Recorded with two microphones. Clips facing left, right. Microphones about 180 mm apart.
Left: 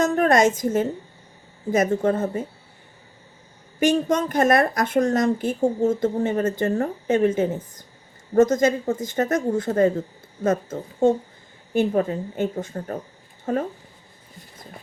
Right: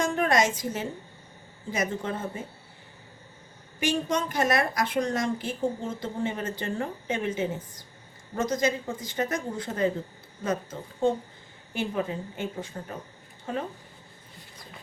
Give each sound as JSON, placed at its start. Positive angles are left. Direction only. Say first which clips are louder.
{"t": 0.0, "sound": "a woman's voice", "louder": "left 6 dB", "side_deg": 45}
{"t": 3.8, "sound": "speech", "louder": "left 7 dB", "side_deg": 50}